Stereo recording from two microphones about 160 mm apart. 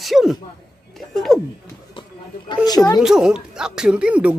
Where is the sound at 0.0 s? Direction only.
Centre (ahead or behind).